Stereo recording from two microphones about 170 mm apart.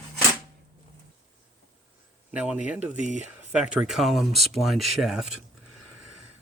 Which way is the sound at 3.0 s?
45° right (ahead or behind).